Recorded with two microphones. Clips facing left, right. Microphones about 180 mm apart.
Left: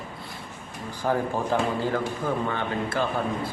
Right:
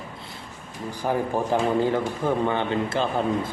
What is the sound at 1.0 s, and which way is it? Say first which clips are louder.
Speech: right 1 dB; 15° right (ahead or behind).